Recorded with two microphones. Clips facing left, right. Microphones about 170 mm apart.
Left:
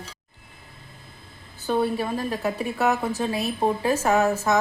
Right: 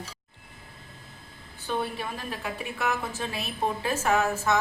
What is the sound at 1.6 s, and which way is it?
A woman's voice, 40° left (ahead or behind).